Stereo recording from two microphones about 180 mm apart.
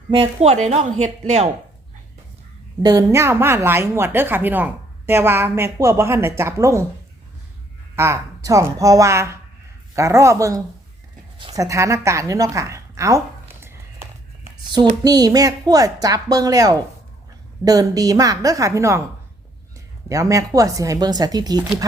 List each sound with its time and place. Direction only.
0.1 s speech: 35° right (ahead or behind)
2.8 s a woman's voice: 20° right (ahead or behind)
7.9 s a woman's voice: 15° right (ahead or behind)
20.1 s a woman's voice: 20° right (ahead or behind)